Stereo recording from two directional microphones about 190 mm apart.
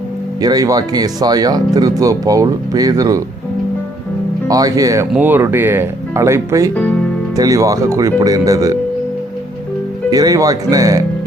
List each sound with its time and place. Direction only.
0.4 s speech: 20° right (ahead or behind)
4.4 s speech: 20° right (ahead or behind)
10.1 s speech: 20° right (ahead or behind)